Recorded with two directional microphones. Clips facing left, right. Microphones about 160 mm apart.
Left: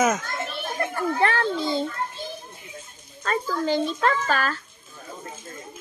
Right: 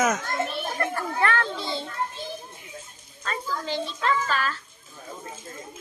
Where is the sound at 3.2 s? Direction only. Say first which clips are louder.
Left 6 dB; 45° left (ahead or behind).